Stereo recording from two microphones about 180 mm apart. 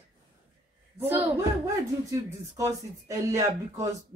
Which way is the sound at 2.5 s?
15° right (ahead or behind).